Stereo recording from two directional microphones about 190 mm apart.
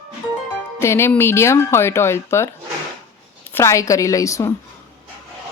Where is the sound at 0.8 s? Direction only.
15° left (ahead or behind).